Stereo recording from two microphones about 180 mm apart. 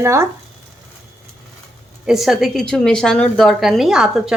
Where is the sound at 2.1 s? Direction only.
Centre (ahead or behind).